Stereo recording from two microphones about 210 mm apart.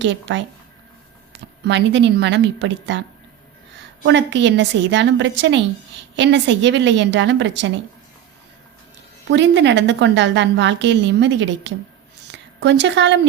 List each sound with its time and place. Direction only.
0.0 s a woman's voice: 60° right (ahead or behind)
1.6 s a woman's voice: 55° right (ahead or behind)
4.0 s a woman's voice: 60° right (ahead or behind)
9.3 s a woman's voice: 60° right (ahead or behind)
12.3 s a sound: 55° right (ahead or behind)